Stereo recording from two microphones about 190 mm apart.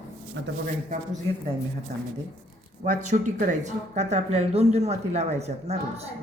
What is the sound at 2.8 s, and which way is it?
Speech, 40° right (ahead or behind).